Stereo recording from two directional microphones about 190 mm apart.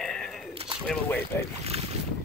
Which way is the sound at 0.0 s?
5° left (ahead or behind).